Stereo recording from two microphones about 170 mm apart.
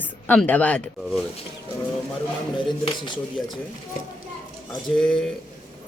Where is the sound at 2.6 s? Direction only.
30° left (ahead or behind).